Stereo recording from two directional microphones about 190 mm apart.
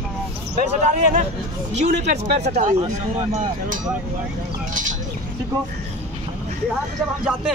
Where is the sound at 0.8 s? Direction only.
40° right (ahead or behind).